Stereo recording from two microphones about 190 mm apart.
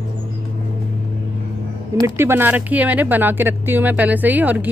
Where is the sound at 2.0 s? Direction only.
15° right (ahead or behind).